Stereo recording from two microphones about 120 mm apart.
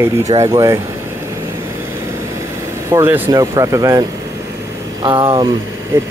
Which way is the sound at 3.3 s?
30° right (ahead or behind).